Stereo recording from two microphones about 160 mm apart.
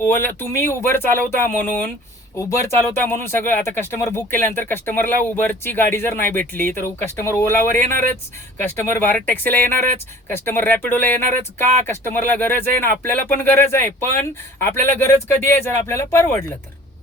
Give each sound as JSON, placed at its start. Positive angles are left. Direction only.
{"t": 0.0, "sound": "speech", "side_deg": 10}
{"t": 8.7, "sound": "speech", "side_deg": 15}